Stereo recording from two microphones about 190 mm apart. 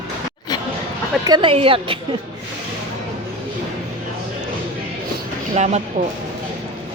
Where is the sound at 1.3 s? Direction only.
25° right (ahead or behind).